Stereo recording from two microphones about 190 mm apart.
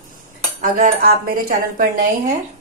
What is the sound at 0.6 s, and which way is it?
Speech, 45° right (ahead or behind).